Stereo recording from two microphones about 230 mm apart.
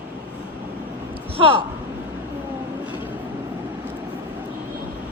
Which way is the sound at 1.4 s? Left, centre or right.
Right.